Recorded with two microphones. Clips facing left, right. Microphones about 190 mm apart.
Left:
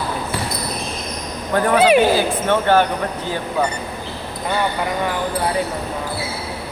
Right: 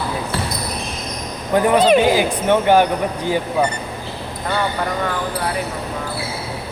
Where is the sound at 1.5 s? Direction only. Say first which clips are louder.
Right 1 dB; 15° right (ahead or behind).